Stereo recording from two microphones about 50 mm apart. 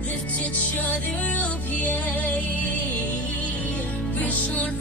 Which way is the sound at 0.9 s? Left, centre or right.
Left.